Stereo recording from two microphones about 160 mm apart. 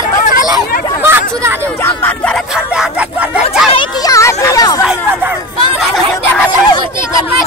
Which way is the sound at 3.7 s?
20° left (ahead or behind).